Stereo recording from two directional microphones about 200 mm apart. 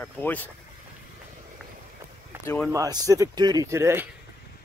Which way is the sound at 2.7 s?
15° right (ahead or behind).